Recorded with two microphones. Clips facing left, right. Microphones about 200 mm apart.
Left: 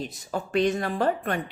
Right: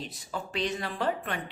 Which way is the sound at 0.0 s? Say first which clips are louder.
Left 6 dB; 45° left (ahead or behind).